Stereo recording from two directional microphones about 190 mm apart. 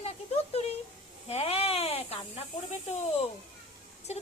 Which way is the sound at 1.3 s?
35° left (ahead or behind).